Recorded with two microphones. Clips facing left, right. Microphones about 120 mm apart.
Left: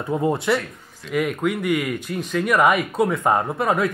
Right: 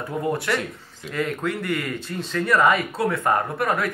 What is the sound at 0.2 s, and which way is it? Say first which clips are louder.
Speech: left 2 dB; 20° left (ahead or behind).